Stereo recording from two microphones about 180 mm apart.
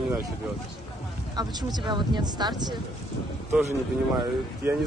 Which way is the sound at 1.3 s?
25° right (ahead or behind).